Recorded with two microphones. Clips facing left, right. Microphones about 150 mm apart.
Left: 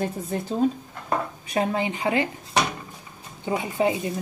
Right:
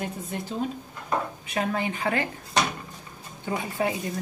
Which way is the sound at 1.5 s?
20° left (ahead or behind).